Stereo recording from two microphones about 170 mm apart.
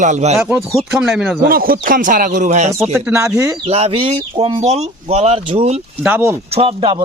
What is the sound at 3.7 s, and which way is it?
Speech, 35° right (ahead or behind).